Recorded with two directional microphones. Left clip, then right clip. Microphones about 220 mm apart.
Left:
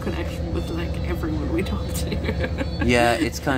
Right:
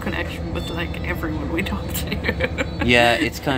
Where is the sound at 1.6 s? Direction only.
5° right (ahead or behind).